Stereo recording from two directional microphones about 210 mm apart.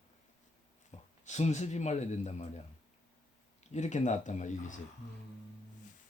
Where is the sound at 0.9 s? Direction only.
35° left (ahead or behind).